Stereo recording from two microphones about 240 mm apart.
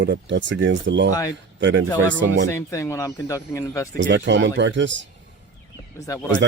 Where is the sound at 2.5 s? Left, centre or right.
Centre.